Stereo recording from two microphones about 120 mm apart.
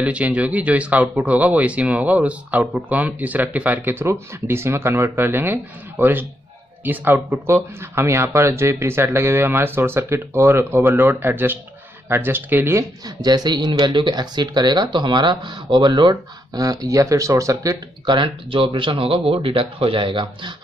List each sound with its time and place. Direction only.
0.0 s speech: 10° right (ahead or behind)
13.2 s speech: 35° right (ahead or behind)
18.0 s speech: 40° right (ahead or behind)